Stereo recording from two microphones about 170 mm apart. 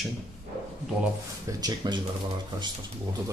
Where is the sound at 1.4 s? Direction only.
25° right (ahead or behind).